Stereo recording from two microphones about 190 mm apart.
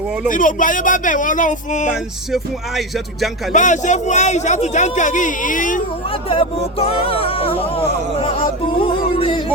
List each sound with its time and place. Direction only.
0.3 s speech: 45° left (ahead or behind)
2.3 s speech: centre (ahead or behind)
3.5 s a man's voice: 40° left (ahead or behind)
6.2 s music: 30° left (ahead or behind)